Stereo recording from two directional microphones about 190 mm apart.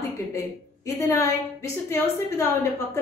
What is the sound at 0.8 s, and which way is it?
A woman's voice, 15° left (ahead or behind).